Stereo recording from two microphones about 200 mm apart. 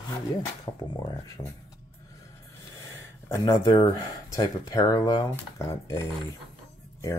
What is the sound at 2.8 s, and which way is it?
Speech, 15° left (ahead or behind).